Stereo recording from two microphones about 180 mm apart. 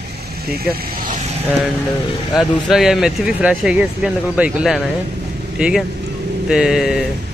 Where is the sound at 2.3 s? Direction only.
Centre (ahead or behind).